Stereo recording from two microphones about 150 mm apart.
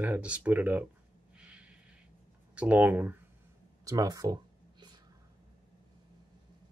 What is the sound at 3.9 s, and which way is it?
Speech, 25° right (ahead or behind).